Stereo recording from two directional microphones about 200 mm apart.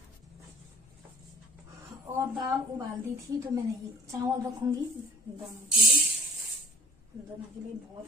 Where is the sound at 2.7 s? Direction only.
15° right (ahead or behind).